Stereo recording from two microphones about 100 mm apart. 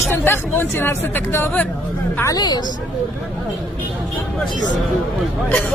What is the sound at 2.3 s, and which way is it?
Speech, 45° left (ahead or behind).